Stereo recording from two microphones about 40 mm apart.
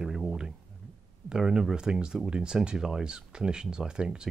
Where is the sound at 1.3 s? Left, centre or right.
Centre.